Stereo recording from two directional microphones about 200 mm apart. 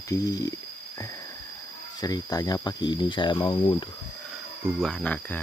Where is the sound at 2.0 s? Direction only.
20° left (ahead or behind).